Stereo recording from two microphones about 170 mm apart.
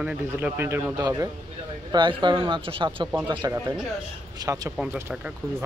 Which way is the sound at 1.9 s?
25° right (ahead or behind).